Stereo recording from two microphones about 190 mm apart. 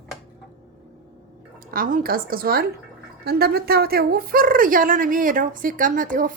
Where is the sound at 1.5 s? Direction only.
50° right (ahead or behind).